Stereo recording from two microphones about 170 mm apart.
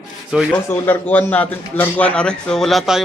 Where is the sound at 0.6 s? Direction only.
15° left (ahead or behind).